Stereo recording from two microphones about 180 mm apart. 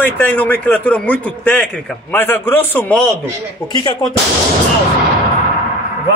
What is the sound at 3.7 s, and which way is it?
Speech, 25° left (ahead or behind).